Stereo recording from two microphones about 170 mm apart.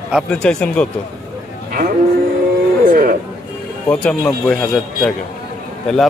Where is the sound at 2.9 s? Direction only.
55° right (ahead or behind).